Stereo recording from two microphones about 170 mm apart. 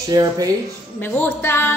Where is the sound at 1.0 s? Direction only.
10° left (ahead or behind).